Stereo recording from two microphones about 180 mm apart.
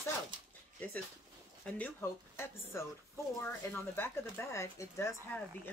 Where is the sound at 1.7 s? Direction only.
10° left (ahead or behind).